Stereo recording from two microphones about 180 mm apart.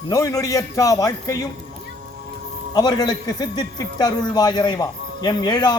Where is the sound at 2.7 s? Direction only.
20° left (ahead or behind).